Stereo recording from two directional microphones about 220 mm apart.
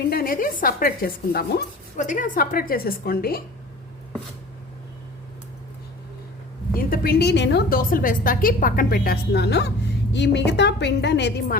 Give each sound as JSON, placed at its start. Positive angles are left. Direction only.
{"t": 0.1, "sound": "a woman's voice", "side_deg": 45}
{"t": 6.7, "sound": "a woman's voice", "side_deg": 40}